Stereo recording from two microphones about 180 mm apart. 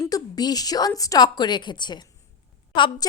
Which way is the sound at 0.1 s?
20° left (ahead or behind).